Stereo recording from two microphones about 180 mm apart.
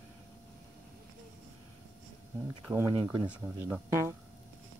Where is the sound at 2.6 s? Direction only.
15° right (ahead or behind).